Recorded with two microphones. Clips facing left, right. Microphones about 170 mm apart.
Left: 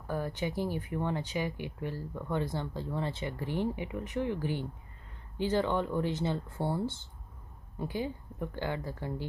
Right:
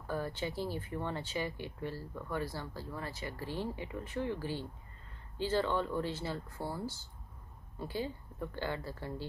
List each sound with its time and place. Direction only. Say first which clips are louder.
0.0 s speech: left 3 dB; 15° left (ahead or behind)